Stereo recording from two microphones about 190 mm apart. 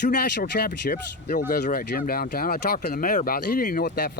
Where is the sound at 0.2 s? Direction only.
60° left (ahead or behind).